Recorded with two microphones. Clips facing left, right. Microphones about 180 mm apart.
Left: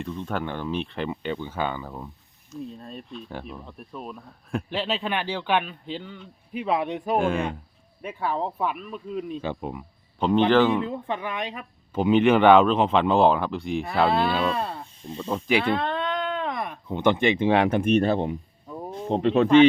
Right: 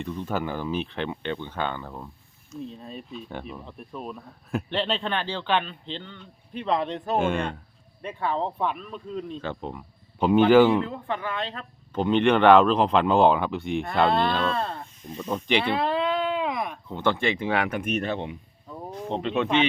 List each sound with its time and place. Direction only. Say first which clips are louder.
0.0 s speech: right 1 dB; centre (ahead or behind)
10.2 s a man's voice: right 3 dB; 5° right (ahead or behind)
10.8 s speech: left 1 dB; 20° left (ahead or behind)
15.0 s speech: left 2 dB; 30° left (ahead or behind)
15.6 s a sound: right 1 dB; 5° right (ahead or behind)
16.9 s speech: left 4 dB; 20° left (ahead or behind); by 19.5 s 40° left (ahead or behind)